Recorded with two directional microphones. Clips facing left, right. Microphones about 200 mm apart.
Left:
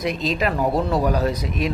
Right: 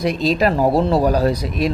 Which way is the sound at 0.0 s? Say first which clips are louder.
Right 5 dB; 35° right (ahead or behind).